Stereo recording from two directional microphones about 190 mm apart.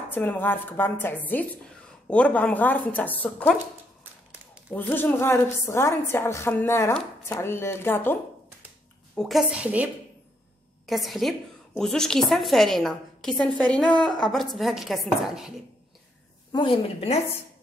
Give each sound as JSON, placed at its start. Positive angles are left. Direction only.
{"t": 0.1, "sound": "a woman's voice", "side_deg": 10}
{"t": 4.7, "sound": "a woman's voice", "side_deg": 10}
{"t": 9.1, "sound": "a woman's voice", "side_deg": 0}
{"t": 10.9, "sound": "a woman's voice", "side_deg": 0}
{"t": 16.5, "sound": "a woman's voice", "side_deg": 30}